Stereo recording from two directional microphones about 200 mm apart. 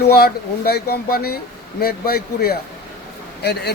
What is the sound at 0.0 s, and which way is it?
Speech, 50° left (ahead or behind).